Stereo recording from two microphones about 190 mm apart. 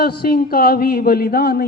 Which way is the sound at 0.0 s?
50° left (ahead or behind).